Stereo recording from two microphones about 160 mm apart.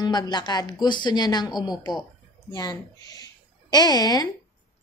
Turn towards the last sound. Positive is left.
turn(degrees=25)  # may be behind; listen again after turning